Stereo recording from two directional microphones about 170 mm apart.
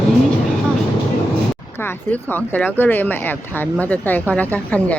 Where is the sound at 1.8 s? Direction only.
10° left (ahead or behind).